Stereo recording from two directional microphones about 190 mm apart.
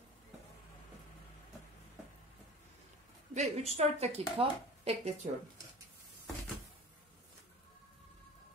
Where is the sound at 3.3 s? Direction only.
35° right (ahead or behind).